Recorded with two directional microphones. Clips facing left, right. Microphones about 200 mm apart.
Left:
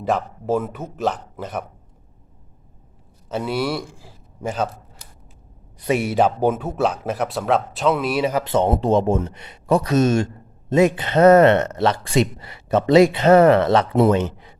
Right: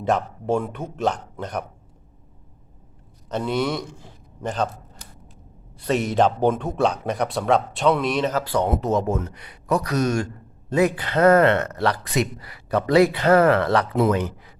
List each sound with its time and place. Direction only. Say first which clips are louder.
0.0 s speech: even; centre (ahead or behind)
3.2 s a man's voice: even; 5° left (ahead or behind)
5.8 s a man's voice: left 1 dB; 10° left (ahead or behind)